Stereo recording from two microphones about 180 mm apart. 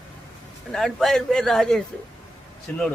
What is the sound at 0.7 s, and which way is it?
A man's voice, centre (ahead or behind).